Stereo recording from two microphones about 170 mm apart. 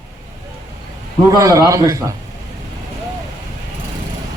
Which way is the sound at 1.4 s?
20° right (ahead or behind).